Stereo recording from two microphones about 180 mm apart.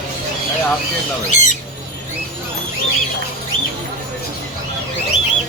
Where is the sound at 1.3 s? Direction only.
45° left (ahead or behind).